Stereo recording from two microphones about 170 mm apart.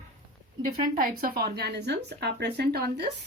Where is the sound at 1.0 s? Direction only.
60° right (ahead or behind).